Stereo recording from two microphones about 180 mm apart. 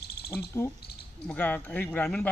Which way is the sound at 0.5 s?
15° left (ahead or behind).